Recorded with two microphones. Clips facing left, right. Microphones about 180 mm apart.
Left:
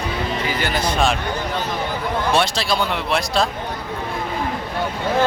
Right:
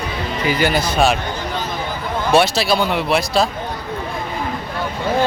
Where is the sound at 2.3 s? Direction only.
5° right (ahead or behind).